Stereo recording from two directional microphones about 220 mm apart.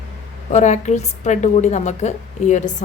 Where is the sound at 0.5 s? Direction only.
30° left (ahead or behind).